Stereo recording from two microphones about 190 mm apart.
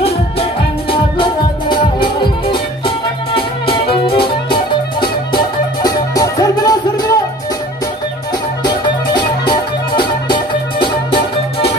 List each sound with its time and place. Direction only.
0.0 s music: 30° left (ahead or behind)
8.6 s music: 25° left (ahead or behind)